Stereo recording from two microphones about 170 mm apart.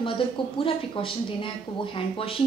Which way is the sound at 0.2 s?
30° left (ahead or behind).